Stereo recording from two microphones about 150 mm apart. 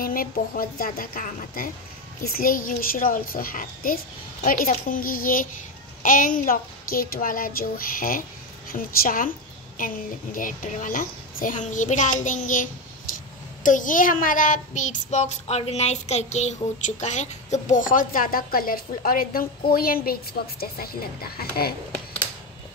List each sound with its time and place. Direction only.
0.0 s a child's voice: 75° left (ahead or behind)
9.8 s child singing: 65° left (ahead or behind); by 21.7 s 90° left